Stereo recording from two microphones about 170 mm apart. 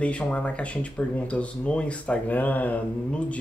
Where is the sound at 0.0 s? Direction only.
5° left (ahead or behind).